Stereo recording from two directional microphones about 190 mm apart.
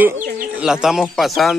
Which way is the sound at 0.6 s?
5° right (ahead or behind).